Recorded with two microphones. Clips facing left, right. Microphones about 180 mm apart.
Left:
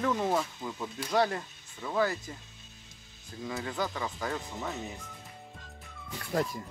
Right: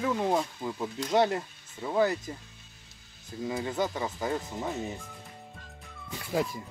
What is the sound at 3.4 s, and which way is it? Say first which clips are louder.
Speech: right 4 dB; 20° right (ahead or behind).